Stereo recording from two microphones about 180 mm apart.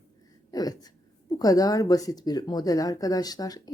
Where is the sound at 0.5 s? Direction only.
20° left (ahead or behind).